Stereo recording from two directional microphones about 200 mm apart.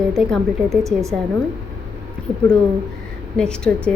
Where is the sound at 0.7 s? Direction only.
15° right (ahead or behind).